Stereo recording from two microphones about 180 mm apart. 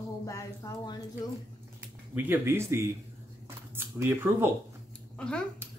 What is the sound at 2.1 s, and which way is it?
Speech, 10° right (ahead or behind).